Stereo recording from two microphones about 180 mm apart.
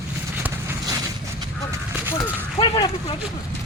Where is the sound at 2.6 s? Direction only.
30° left (ahead or behind).